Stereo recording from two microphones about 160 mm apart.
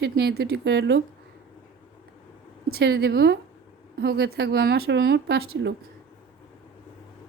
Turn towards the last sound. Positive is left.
turn(degrees=-90)